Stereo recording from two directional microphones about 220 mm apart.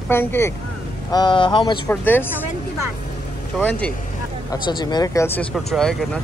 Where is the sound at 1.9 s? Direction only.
10° left (ahead or behind).